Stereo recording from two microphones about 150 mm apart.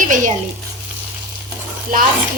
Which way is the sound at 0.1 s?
60° right (ahead or behind).